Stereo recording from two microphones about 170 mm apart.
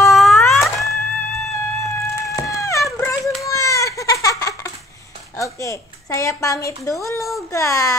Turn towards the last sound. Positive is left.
turn(degrees=20)  # may be behind; listen again after turning